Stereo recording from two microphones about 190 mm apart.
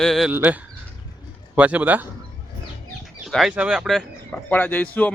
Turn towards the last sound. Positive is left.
turn(degrees=5)  # may be behind; listen again after turning